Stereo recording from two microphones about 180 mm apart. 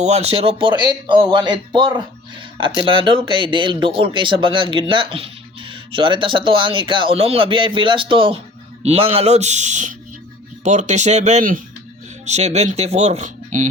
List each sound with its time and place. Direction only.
0.0 s speech: 35° right (ahead or behind)